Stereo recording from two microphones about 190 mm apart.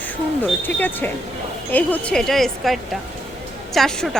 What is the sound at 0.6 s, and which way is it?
A woman's voice, 10° left (ahead or behind).